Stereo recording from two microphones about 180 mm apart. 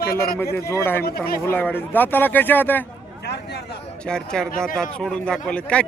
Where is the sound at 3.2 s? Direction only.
65° left (ahead or behind).